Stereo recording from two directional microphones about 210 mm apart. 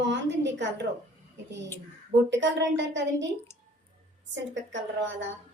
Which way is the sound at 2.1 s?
60° right (ahead or behind).